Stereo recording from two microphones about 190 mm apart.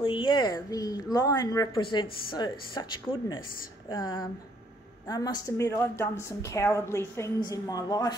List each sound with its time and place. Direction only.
0.0 s a woman's voice: 25° left (ahead or behind)